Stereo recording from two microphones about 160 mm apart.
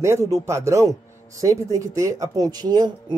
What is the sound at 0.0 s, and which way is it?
A man's voice, 20° right (ahead or behind).